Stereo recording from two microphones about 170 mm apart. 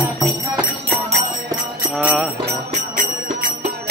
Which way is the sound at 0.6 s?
10° right (ahead or behind).